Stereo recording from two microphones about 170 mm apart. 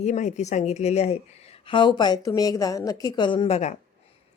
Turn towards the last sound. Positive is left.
turn(degrees=30)  # may be behind; listen again after turning